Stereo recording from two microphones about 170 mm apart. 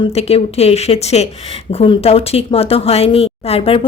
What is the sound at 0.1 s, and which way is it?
A woman's voice, 35° left (ahead or behind).